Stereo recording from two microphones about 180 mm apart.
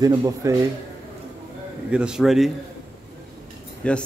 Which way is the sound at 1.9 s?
5° right (ahead or behind).